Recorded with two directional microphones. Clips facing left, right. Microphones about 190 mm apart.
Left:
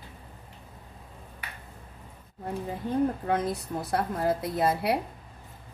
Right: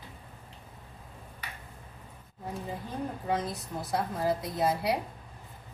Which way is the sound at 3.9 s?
55° left (ahead or behind).